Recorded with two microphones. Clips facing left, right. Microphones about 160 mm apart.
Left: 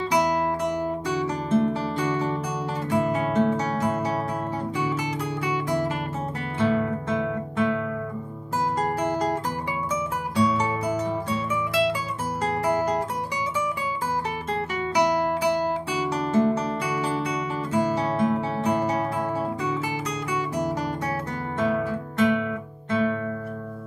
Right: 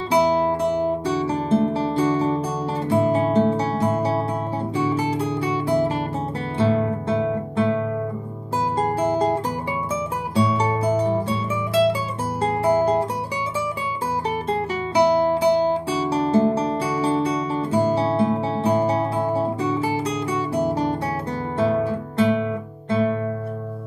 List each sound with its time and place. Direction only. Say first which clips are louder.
0.1 s guitar: right 6 dB; 30° right (ahead or behind)
2.9 s music: right 5 dB; 30° right (ahead or behind)
6.6 s guitar: right 3 dB; 30° right (ahead or behind)
8.7 s music: right 6 dB; 30° right (ahead or behind)
12.4 s guitar: right 5 dB; 30° right (ahead or behind)
14.5 s guitar: right 2 dB; 30° right (ahead or behind)
21.5 s music: right 4 dB; 30° right (ahead or behind)